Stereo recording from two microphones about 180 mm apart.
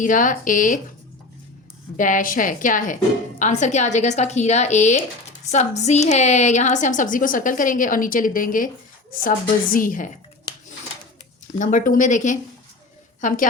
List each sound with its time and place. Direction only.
0.0 s a woman's voice: 45° left (ahead or behind)
2.0 s a woman's voice: 45° left (ahead or behind)
9.7 s a woman's voice: 50° left (ahead or behind)
11.5 s a woman's voice: 45° left (ahead or behind)